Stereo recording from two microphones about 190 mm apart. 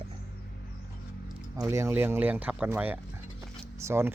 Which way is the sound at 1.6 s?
15° right (ahead or behind).